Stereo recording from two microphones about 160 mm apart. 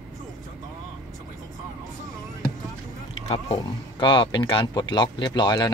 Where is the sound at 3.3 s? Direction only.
35° left (ahead or behind).